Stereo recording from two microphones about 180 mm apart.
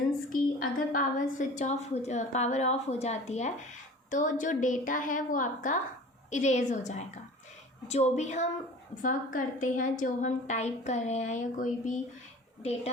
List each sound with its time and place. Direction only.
0.3 s a woman's voice: 50° left (ahead or behind)